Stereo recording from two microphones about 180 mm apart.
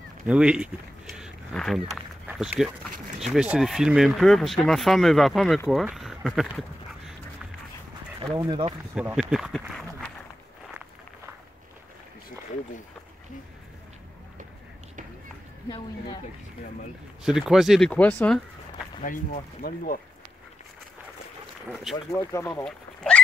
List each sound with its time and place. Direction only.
0.3 s speech: 5° right (ahead or behind)
8.4 s speech: 25° right (ahead or behind)
8.9 s speech: 5° right (ahead or behind)
17.2 s speech: 5° right (ahead or behind)
19.0 s speech: 50° left (ahead or behind)
21.6 s speech: centre (ahead or behind)
22.1 s speech: 15° left (ahead or behind)
22.7 s duck: 5° left (ahead or behind)